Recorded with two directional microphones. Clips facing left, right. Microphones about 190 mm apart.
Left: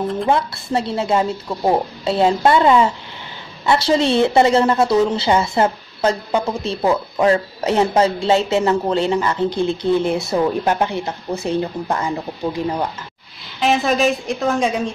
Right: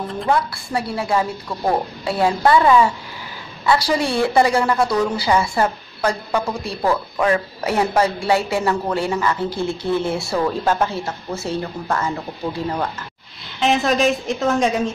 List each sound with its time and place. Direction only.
0.3 s a woman's voice: 25° left (ahead or behind)
13.6 s a woman's voice: centre (ahead or behind)